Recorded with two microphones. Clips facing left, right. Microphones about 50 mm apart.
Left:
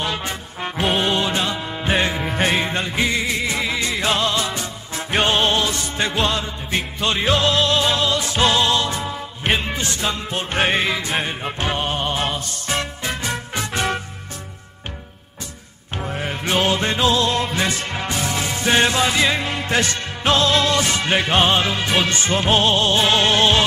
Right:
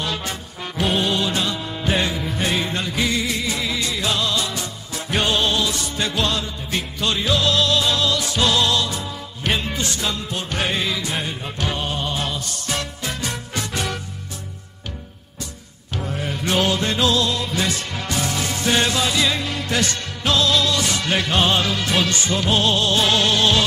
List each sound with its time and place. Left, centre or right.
0.0 s music: left
16.0 s music: left